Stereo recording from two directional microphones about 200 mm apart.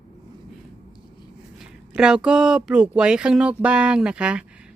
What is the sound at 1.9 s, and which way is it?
Speech, 5° right (ahead or behind).